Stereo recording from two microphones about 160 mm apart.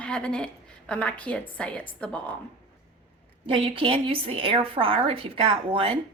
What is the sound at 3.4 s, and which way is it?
A woman's voice, 35° right (ahead or behind).